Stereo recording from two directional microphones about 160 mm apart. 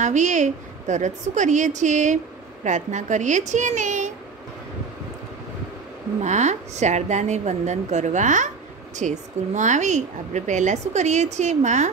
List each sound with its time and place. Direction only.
0.0 s a woman's voice: 50° right (ahead or behind)
6.2 s a woman's voice: 45° right (ahead or behind)